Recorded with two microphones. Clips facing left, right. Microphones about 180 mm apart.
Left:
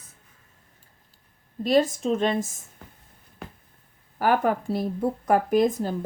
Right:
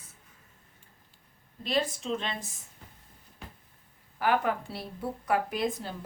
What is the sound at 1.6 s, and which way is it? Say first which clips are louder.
Speech: left 9 dB; 45° left (ahead or behind).